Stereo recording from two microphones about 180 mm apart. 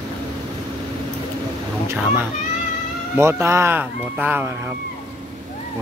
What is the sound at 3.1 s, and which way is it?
Speech, 15° right (ahead or behind).